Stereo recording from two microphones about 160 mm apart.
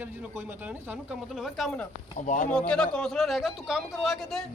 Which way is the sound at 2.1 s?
50° left (ahead or behind).